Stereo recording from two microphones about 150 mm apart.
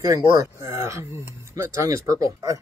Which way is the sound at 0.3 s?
20° right (ahead or behind).